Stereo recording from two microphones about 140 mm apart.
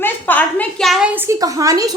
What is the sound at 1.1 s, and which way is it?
Speech, 20° right (ahead or behind).